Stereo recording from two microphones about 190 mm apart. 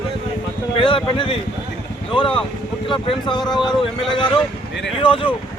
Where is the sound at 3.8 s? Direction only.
25° left (ahead or behind).